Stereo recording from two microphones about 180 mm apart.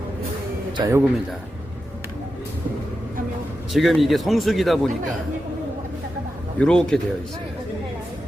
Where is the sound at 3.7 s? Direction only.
Centre (ahead or behind).